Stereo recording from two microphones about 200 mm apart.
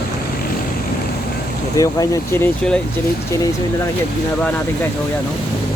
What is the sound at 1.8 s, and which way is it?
Speech, 15° left (ahead or behind).